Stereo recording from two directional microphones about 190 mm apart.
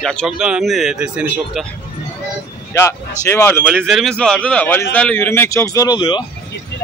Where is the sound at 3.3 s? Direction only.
10° left (ahead or behind).